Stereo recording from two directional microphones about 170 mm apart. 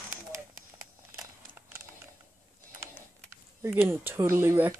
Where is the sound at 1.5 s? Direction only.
15° right (ahead or behind).